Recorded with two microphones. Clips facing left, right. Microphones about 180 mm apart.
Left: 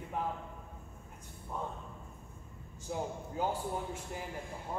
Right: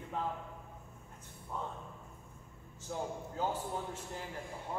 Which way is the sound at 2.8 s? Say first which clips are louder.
Left 1 dB; 10° left (ahead or behind).